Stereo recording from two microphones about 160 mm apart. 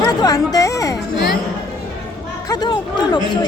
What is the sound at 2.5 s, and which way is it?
Speech, 25° left (ahead or behind).